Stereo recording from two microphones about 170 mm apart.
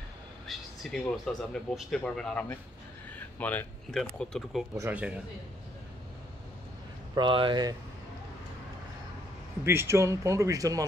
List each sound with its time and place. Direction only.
0.5 s speech: centre (ahead or behind)
4.7 s speech: 10° right (ahead or behind)
7.2 s speech: 30° right (ahead or behind)
9.7 s speech: 15° right (ahead or behind)